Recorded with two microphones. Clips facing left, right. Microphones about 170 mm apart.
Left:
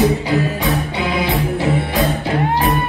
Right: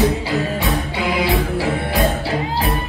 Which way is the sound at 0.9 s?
20° left (ahead or behind).